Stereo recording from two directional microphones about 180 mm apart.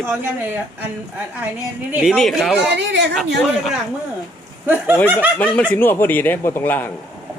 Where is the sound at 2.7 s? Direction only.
75° right (ahead or behind).